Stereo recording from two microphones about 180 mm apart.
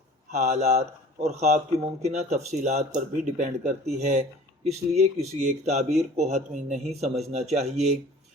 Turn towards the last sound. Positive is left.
turn(degrees=-40)  # may be behind; listen again after turning